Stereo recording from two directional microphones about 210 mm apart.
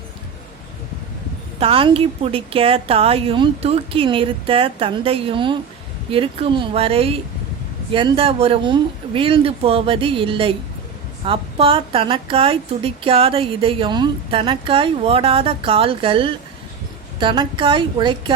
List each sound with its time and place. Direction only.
1.5 s a woman's voice: 25° right (ahead or behind)